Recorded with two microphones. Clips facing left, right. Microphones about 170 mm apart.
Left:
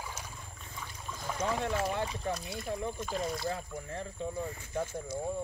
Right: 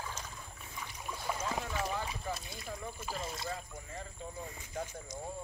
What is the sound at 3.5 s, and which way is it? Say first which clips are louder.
Speech: left 5 dB; 65° left (ahead or behind).